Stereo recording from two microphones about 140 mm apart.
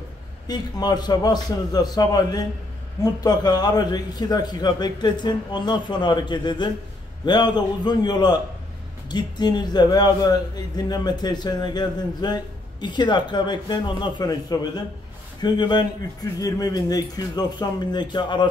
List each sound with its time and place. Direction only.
0.5 s a man's voice: 30° left (ahead or behind)